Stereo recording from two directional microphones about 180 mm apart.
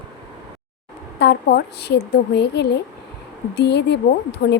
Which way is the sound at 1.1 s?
65° left (ahead or behind).